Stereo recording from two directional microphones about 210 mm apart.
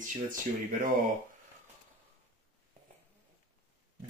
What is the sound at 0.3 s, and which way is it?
Speech, 40° right (ahead or behind).